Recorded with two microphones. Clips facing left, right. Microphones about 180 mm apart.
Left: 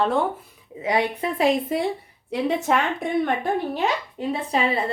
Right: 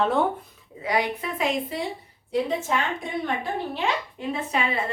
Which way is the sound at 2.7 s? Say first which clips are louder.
Left 7 dB; 65° left (ahead or behind).